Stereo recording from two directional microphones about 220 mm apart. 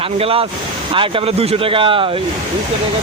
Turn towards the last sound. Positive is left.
turn(degrees=-25)  # may be behind; listen again after turning